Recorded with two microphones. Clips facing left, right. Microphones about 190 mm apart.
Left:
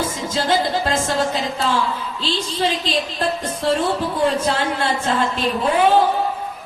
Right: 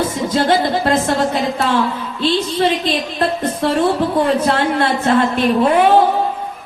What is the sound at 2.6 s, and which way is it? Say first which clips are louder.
A woman's voice: right 4 dB; 50° right (ahead or behind).